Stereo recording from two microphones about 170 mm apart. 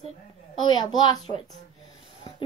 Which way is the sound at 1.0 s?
30° left (ahead or behind).